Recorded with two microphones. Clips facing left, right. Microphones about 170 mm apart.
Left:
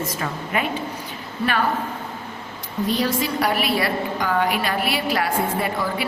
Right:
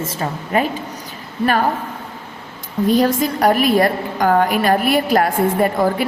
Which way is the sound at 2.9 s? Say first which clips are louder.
Right 7 dB; 50° right (ahead or behind).